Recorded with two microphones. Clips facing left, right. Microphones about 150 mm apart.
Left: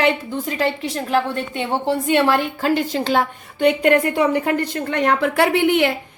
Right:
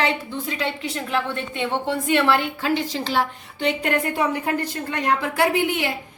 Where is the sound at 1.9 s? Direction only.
40° left (ahead or behind).